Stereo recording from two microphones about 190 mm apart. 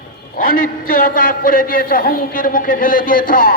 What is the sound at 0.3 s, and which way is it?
A man's voice, 50° left (ahead or behind).